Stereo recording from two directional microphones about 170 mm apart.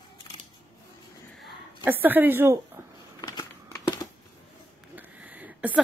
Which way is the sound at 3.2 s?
25° left (ahead or behind).